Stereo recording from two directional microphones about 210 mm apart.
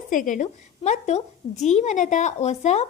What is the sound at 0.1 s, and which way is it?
A woman's voice, 40° left (ahead or behind).